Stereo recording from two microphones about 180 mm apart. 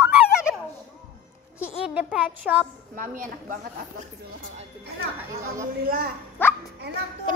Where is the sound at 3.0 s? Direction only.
45° right (ahead or behind).